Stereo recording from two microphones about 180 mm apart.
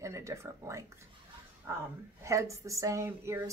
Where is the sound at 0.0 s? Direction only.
15° right (ahead or behind).